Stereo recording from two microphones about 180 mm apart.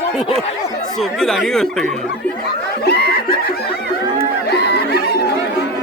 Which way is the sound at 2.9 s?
65° left (ahead or behind).